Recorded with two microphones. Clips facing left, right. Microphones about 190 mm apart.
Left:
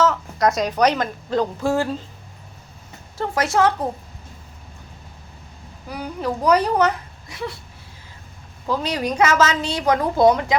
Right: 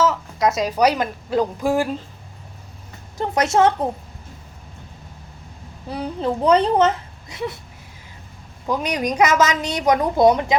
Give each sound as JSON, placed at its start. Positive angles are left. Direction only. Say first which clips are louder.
{"t": 0.0, "sound": "a woman's voice", "louder": "even", "side_deg": -5}
{"t": 3.2, "sound": "speech", "louder": "right 2 dB", "side_deg": -20}
{"t": 5.9, "sound": "speech", "louder": "right 2 dB", "side_deg": -25}
{"t": 8.6, "sound": "a woman's voice", "louder": "right 1 dB", "side_deg": -15}